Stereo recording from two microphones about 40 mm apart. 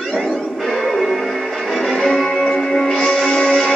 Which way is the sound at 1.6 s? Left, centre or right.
Centre.